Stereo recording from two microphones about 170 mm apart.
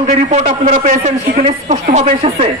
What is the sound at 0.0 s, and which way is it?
A man's voice, 40° right (ahead or behind).